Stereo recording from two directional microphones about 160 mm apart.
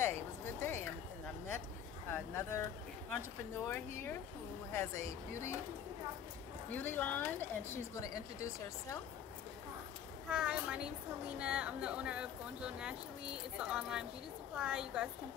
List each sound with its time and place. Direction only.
0.0 s music: 15° left (ahead or behind)
2.0 s speech: 15° left (ahead or behind)
3.6 s speech: 15° left (ahead or behind)
6.7 s speech: 10° left (ahead or behind)
10.3 s a woman's voice: 5° right (ahead or behind)